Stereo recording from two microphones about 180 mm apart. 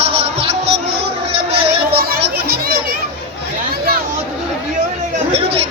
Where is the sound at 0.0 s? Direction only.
30° right (ahead or behind).